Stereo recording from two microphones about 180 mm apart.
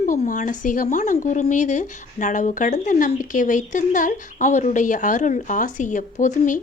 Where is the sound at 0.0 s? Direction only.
45° left (ahead or behind).